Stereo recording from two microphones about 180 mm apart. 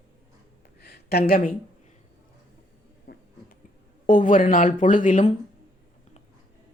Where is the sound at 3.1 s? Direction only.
60° left (ahead or behind).